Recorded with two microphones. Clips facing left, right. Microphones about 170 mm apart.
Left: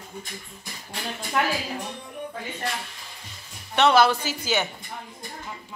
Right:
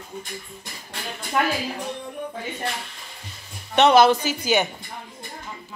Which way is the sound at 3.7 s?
20° right (ahead or behind).